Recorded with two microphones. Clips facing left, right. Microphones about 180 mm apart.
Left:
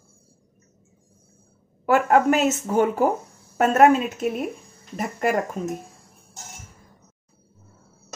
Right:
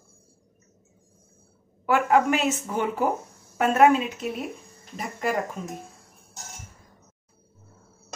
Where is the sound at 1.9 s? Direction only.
45° left (ahead or behind).